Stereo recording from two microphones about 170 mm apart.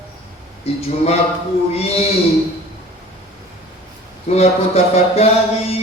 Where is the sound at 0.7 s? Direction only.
35° left (ahead or behind).